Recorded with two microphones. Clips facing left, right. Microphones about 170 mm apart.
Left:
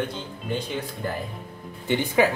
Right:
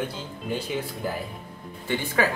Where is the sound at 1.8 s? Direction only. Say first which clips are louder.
Left 4 dB; 20° left (ahead or behind).